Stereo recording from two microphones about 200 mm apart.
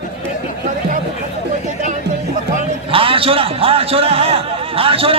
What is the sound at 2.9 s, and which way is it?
A man's voice, 25° right (ahead or behind).